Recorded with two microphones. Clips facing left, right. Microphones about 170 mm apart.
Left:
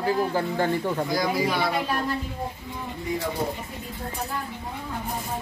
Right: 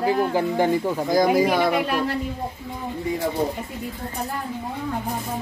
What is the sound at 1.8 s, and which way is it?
Speech, 70° right (ahead or behind).